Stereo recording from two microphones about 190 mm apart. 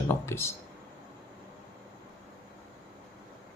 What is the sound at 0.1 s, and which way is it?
Speech, 15° left (ahead or behind).